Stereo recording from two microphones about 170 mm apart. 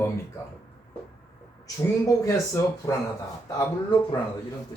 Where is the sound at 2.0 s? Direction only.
20° left (ahead or behind).